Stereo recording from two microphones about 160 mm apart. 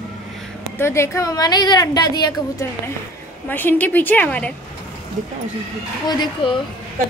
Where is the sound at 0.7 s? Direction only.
15° left (ahead or behind).